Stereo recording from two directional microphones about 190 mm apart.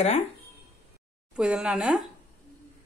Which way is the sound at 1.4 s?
5° right (ahead or behind).